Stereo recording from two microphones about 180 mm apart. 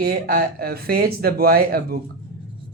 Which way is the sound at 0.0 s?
60° right (ahead or behind).